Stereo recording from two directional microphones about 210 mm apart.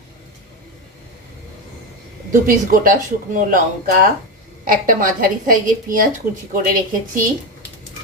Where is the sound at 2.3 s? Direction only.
40° right (ahead or behind).